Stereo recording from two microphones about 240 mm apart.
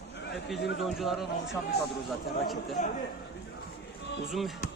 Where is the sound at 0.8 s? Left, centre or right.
Centre.